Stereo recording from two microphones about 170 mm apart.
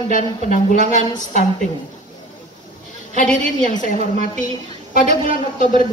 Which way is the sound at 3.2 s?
50° left (ahead or behind).